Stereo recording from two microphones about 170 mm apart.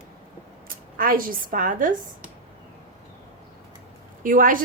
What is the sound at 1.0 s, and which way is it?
Speech, 55° right (ahead or behind).